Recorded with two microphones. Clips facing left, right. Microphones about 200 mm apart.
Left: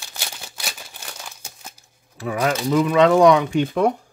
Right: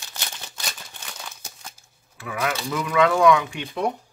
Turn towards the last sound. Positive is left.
turn(degrees=50)  # may be behind; listen again after turning